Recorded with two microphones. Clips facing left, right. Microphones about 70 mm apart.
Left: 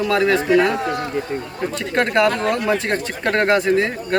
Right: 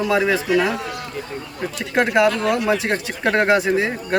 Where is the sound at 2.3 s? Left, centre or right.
Left.